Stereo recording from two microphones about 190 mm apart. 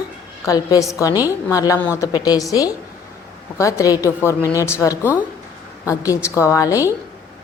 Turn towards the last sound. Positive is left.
turn(degrees=15)  # may be behind; listen again after turning